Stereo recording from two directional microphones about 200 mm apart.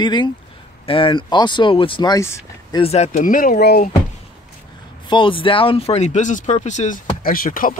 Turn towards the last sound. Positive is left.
turn(degrees=45)  # may be behind; listen again after turning